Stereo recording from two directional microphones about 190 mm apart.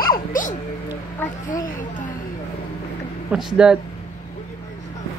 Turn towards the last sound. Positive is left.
turn(degrees=-5)  # may be behind; listen again after turning